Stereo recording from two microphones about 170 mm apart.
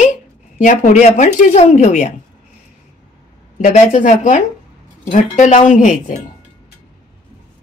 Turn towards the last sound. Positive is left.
turn(degrees=50)  # may be behind; listen again after turning